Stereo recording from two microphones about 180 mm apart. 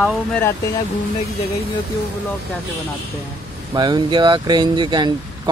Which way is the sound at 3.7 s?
25° right (ahead or behind).